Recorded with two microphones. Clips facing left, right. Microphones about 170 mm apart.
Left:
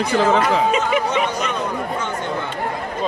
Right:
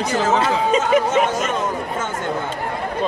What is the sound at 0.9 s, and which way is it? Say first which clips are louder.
Speech: right 3 dB; 45° right (ahead or behind).